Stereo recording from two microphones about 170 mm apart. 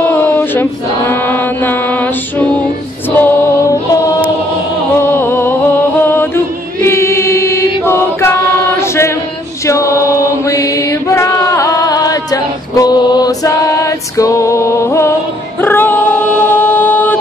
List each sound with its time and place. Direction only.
0.0 s a sound: 10° left (ahead or behind)
3.2 s music: 15° left (ahead or behind)
5.0 s a sound: 10° left (ahead or behind)
7.8 s chant: 15° left (ahead or behind)
9.7 s chant: 20° left (ahead or behind)
15.6 s female singing: 10° left (ahead or behind)